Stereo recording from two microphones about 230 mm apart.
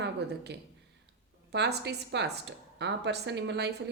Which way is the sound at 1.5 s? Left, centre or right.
Right.